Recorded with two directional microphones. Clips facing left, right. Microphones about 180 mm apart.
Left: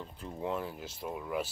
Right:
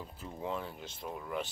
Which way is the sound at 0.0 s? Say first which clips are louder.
Left 3 dB; centre (ahead or behind).